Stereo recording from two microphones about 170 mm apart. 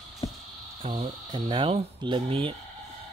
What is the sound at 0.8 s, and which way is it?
Speech, 30° right (ahead or behind).